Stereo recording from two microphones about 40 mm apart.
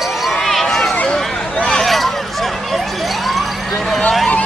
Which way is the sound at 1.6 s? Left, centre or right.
Centre.